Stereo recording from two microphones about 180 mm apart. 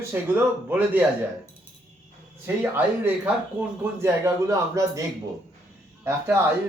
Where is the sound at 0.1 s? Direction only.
10° right (ahead or behind).